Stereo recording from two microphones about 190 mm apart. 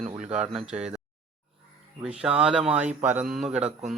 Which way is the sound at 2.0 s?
5° right (ahead or behind).